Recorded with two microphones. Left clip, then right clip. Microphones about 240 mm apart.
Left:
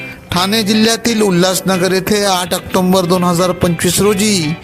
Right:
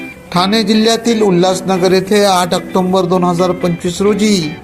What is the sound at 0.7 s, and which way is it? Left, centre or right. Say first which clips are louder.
A man's voice: right 2 dB; left.